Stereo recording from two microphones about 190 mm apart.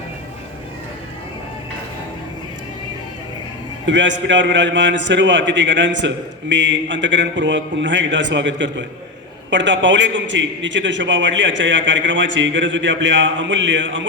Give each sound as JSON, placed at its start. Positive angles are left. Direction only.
{"t": 3.8, "sound": "a man's voice", "side_deg": -70}